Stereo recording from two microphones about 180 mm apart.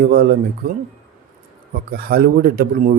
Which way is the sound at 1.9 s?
55° right (ahead or behind).